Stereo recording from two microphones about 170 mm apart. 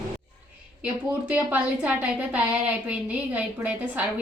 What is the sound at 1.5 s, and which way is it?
Speech, 5° right (ahead or behind).